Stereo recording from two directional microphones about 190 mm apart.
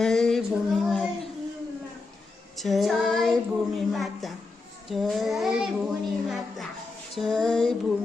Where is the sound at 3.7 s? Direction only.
Centre (ahead or behind).